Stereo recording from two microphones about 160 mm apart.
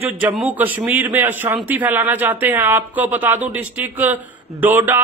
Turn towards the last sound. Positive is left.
turn(degrees=-10)  # may be behind; listen again after turning